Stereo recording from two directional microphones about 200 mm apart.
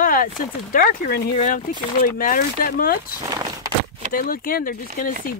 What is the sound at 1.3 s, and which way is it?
Speech, 35° left (ahead or behind).